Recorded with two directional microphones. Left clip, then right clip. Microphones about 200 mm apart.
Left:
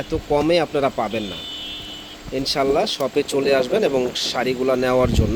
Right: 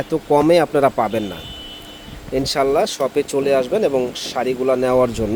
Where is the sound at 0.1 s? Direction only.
25° right (ahead or behind).